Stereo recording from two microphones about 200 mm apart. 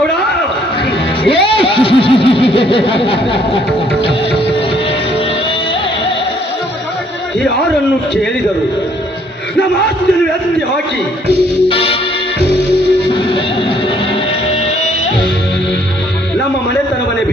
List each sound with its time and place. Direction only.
1.2 s a sound: 25° left (ahead or behind)
11.7 s music: 25° left (ahead or behind)
13.1 s music: 25° left (ahead or behind)